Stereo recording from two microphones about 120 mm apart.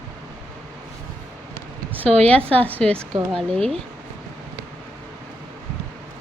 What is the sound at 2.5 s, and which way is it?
Speech, 15° left (ahead or behind).